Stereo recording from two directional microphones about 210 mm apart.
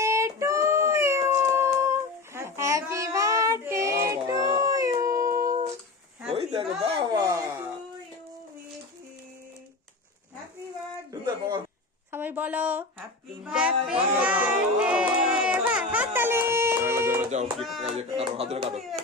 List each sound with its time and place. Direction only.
0.0 s cat: 15° right (ahead or behind)
6.3 s a sound: 25° right (ahead or behind)
11.1 s a sound: 20° right (ahead or behind)
12.1 s a woman's voice: 10° right (ahead or behind)
13.4 s music: 5° right (ahead or behind)
17.6 s chop: centre (ahead or behind)
18.2 s speech: 30° right (ahead or behind)